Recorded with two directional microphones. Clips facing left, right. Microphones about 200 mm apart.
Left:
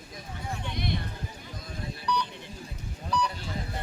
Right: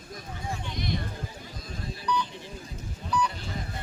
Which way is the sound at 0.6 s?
60° left (ahead or behind).